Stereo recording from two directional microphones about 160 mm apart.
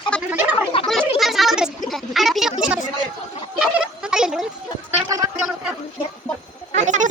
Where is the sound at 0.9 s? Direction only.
Centre (ahead or behind).